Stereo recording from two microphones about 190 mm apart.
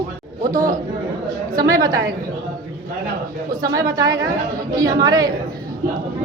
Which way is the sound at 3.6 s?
20° right (ahead or behind).